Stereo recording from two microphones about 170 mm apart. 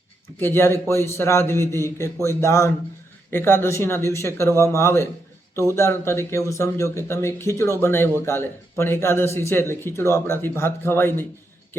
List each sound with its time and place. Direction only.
0.3 s speech: 15° left (ahead or behind)